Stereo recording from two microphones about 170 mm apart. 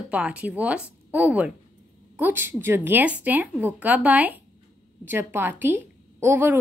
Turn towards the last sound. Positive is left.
turn(degrees=-10)  # may be behind; listen again after turning